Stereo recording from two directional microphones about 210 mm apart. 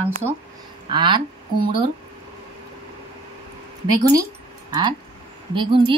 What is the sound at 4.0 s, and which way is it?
Speech, 15° right (ahead or behind).